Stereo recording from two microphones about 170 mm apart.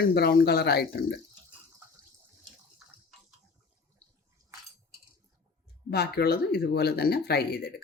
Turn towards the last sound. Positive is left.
turn(degrees=70)  # may be behind; listen again after turning